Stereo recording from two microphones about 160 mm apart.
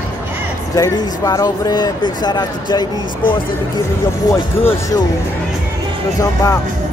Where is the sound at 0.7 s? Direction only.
25° left (ahead or behind).